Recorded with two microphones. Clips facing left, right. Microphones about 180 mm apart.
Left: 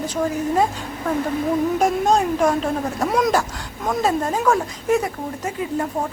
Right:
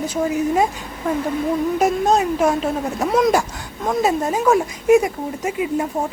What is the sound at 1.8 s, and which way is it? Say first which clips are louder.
A woman's voice: right 3 dB; 5° right (ahead or behind).